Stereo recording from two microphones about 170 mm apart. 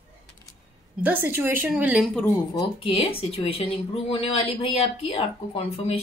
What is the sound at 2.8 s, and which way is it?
Speech, 35° left (ahead or behind).